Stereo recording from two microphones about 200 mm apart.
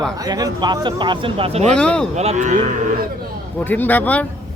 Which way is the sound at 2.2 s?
35° right (ahead or behind).